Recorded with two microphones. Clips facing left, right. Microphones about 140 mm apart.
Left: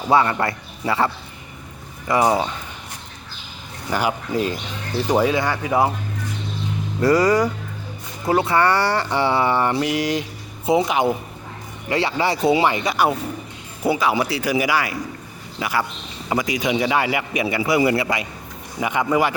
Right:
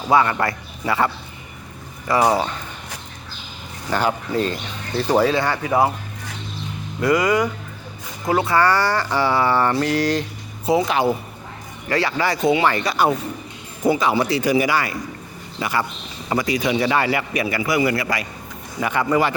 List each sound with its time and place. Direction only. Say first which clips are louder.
0.1 s speech: even; 30° left (ahead or behind)
3.8 s speech: right 1 dB; 10° left (ahead or behind)
7.0 s speech: left 2 dB; 35° left (ahead or behind)
12.7 s speech: right 1 dB; 15° left (ahead or behind)
17.5 s speech: left 2 dB; 25° left (ahead or behind)